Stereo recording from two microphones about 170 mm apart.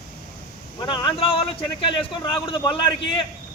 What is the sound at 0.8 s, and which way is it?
Speech, 25° left (ahead or behind).